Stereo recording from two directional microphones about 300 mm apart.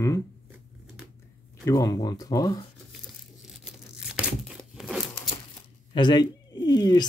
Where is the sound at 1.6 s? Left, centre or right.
Centre.